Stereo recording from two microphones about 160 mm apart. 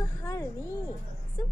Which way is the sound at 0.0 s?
20° left (ahead or behind).